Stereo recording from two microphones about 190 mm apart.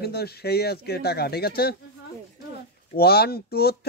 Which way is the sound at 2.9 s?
55° left (ahead or behind).